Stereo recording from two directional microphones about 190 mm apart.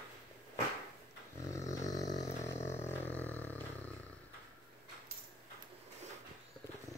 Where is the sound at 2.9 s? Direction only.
10° left (ahead or behind).